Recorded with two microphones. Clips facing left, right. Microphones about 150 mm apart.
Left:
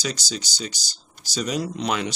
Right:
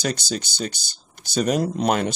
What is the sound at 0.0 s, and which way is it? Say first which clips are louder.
Speech: right 4 dB; 55° right (ahead or behind).